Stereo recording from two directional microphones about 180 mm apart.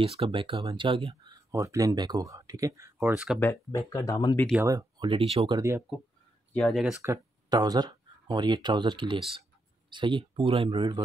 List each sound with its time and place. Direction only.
0.0 s speech: 30° right (ahead or behind)
1.5 s speech: 15° right (ahead or behind)
3.3 s speech: 15° left (ahead or behind)
4.6 s speech: 20° right (ahead or behind)
5.6 s speech: 15° right (ahead or behind)
6.5 s speech: 5° left (ahead or behind)
7.0 s speech: 20° right (ahead or behind)